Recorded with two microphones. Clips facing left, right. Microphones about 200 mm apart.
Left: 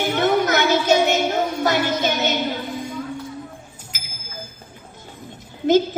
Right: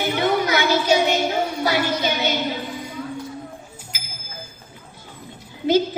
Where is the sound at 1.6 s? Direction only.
50° left (ahead or behind).